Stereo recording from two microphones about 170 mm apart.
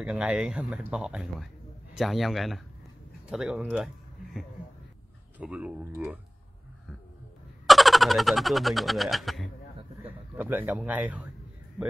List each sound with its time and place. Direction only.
0.0 s speech: 5° right (ahead or behind)
7.6 s a sound: centre (ahead or behind)
10.3 s speech: 10° right (ahead or behind)